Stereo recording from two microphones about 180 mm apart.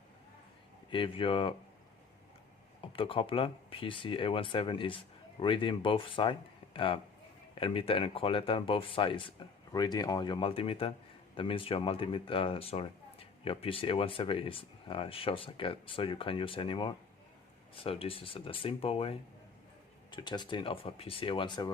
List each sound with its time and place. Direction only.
0.9 s speech: 30° left (ahead or behind)
2.8 s speech: 30° left (ahead or behind)